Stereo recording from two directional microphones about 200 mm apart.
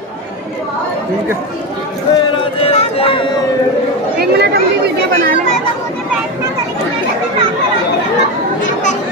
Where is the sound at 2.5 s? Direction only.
30° left (ahead or behind).